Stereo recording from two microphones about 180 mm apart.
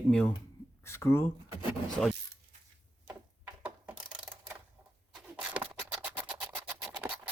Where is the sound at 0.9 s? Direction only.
15° left (ahead or behind).